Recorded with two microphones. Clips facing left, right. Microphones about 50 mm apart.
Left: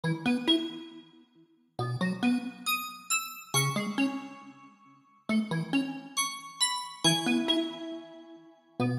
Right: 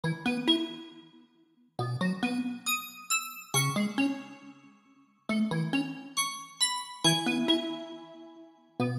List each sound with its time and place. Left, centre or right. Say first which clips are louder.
0.0 s music: left 1 dB; centre
1.8 s music: even; centre
5.2 s music: even; centre